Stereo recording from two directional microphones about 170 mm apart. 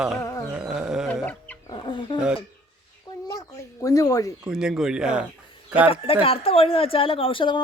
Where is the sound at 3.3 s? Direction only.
20° left (ahead or behind).